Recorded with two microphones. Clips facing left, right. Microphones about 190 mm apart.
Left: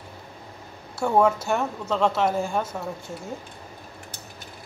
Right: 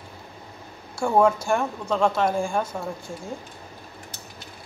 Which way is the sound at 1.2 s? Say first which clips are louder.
Right 1 dB; 5° left (ahead or behind).